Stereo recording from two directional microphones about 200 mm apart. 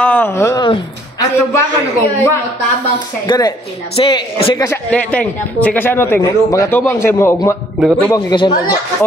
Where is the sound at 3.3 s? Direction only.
20° left (ahead or behind).